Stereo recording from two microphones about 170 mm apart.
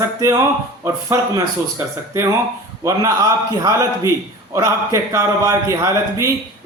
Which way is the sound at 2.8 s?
20° right (ahead or behind).